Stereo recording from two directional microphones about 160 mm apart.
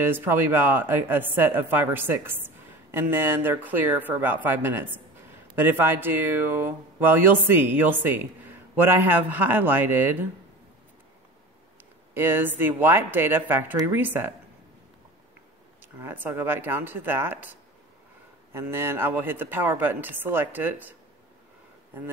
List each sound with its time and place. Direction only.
0.0 s speech: 15° right (ahead or behind)
12.1 s speech: 15° right (ahead or behind)
16.0 s speech: 10° right (ahead or behind)